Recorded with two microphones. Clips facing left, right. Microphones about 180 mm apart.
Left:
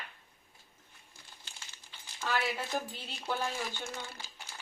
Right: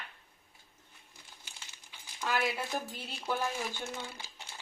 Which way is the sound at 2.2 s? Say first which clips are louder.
Right 1 dB; 10° right (ahead or behind).